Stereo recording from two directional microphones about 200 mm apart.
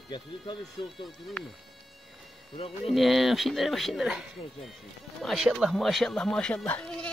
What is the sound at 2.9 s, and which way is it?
Speech, centre (ahead or behind).